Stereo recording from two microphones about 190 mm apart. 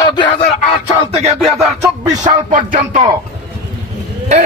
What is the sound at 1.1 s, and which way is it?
Speech, 35° right (ahead or behind).